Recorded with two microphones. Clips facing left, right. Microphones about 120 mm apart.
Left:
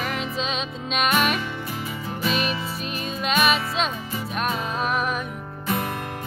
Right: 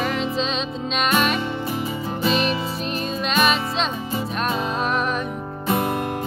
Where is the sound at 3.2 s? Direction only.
5° left (ahead or behind).